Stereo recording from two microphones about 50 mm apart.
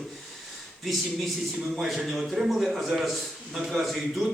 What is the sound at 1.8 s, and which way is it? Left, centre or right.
A man's voice, centre.